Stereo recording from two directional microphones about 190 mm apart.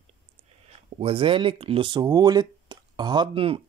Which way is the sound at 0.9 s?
30° right (ahead or behind).